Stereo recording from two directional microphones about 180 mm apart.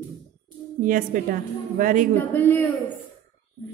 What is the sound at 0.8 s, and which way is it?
A woman's voice, 50° right (ahead or behind).